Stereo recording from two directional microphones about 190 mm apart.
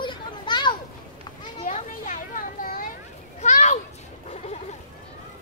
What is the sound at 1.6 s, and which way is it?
Children playing, 40° left (ahead or behind).